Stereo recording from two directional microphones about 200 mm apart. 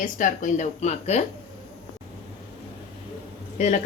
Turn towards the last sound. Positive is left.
turn(degrees=35)  # may be behind; listen again after turning